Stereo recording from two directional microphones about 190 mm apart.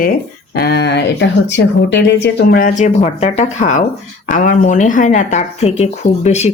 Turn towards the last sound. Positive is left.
turn(degrees=35)  # may be behind; listen again after turning